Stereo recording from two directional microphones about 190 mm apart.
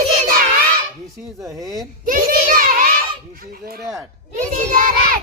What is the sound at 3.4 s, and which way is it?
Speech, 50° right (ahead or behind).